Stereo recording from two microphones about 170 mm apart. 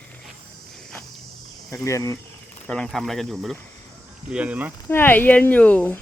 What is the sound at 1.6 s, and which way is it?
Speech, 20° left (ahead or behind).